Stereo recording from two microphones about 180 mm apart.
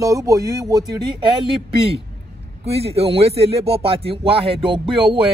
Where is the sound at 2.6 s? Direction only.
35° right (ahead or behind).